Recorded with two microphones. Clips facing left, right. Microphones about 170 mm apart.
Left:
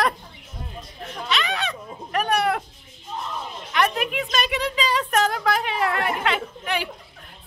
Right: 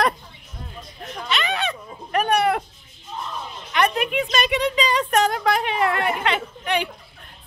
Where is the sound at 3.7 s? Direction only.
Centre (ahead or behind).